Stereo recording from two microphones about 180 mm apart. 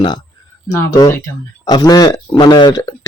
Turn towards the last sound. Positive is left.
turn(degrees=25)  # may be behind; listen again after turning